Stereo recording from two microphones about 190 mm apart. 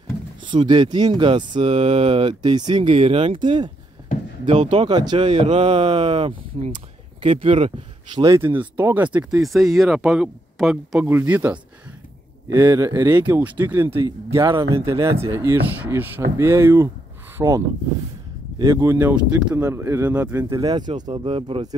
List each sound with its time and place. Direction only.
0.5 s speech: 25° right (ahead or behind)